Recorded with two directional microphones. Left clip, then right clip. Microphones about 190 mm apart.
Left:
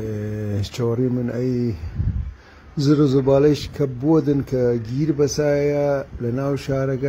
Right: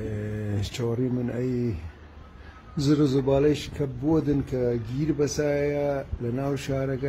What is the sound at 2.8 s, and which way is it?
A man's voice, 10° left (ahead or behind).